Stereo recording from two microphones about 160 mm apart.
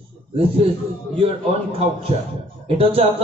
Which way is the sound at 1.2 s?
35° right (ahead or behind).